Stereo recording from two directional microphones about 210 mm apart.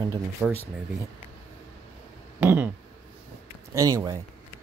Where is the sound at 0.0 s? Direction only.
15° right (ahead or behind).